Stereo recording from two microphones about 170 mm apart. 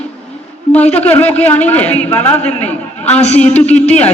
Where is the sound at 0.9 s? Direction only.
10° left (ahead or behind).